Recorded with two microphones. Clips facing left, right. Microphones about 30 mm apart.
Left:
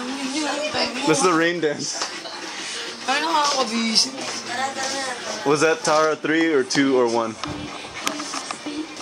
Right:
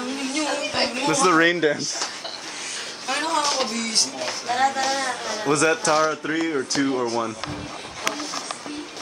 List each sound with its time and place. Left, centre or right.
0.1 s a sound: centre
0.7 s speech: centre
1.2 s speech: centre
3.1 s speech: centre
3.4 s speech: centre
3.7 s speech: left
4.2 s speech: centre
6.2 s speech: centre
7.1 s speech: centre